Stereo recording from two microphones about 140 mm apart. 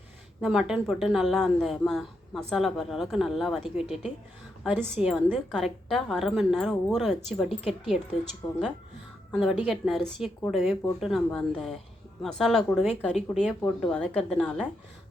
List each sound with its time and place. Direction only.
0.4 s a woman's voice: 5° right (ahead or behind)
5.3 s speech: 5° left (ahead or behind)
8.4 s speech: 20° left (ahead or behind)
9.3 s speech: 5° right (ahead or behind)